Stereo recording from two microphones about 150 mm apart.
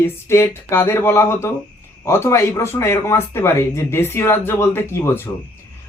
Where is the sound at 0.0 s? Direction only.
15° left (ahead or behind).